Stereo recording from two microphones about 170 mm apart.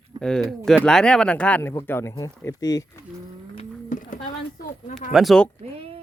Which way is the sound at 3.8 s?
55° left (ahead or behind).